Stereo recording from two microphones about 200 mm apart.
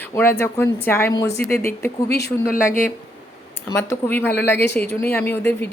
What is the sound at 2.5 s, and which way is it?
Speech, 45° left (ahead or behind).